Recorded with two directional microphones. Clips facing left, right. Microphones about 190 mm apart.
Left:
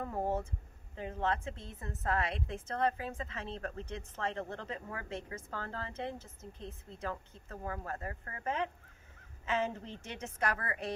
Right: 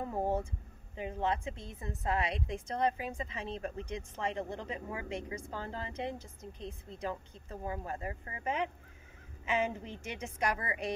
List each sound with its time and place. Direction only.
0.0 s speech: 10° right (ahead or behind)